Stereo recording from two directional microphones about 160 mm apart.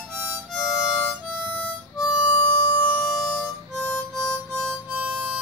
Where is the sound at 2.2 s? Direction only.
25° left (ahead or behind); by 3.2 s 5° left (ahead or behind).